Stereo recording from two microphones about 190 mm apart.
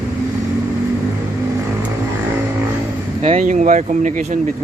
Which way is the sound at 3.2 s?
40° right (ahead or behind).